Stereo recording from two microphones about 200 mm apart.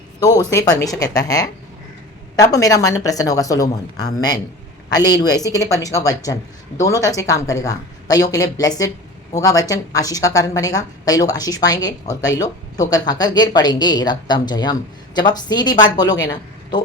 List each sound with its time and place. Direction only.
0.2 s a woman's voice: 15° left (ahead or behind)